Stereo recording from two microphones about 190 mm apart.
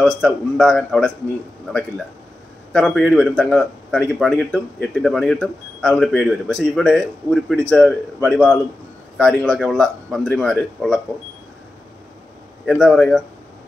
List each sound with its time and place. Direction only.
0.0 s a man's voice: centre (ahead or behind)
12.6 s a man's voice: 5° left (ahead or behind)